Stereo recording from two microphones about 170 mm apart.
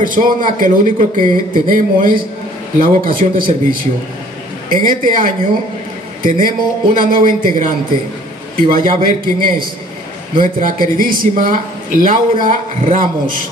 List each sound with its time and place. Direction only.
0.0 s a man's voice: 55° right (ahead or behind)